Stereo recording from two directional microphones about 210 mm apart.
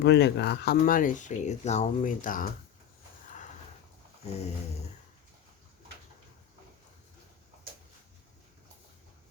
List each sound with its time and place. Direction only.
0.0 s speech: 55° left (ahead or behind)